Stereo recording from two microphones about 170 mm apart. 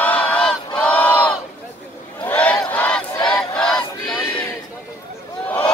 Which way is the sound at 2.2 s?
10° left (ahead or behind).